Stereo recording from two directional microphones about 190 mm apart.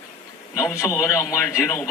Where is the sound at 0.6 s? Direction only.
5° right (ahead or behind).